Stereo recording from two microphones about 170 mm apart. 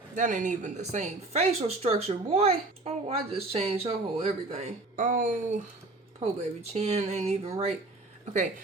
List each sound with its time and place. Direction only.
0.2 s a woman's voice: 50° right (ahead or behind)
6.1 s a woman's voice: 40° right (ahead or behind)